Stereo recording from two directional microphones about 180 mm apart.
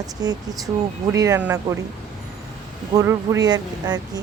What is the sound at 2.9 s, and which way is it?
Speech, 20° right (ahead or behind).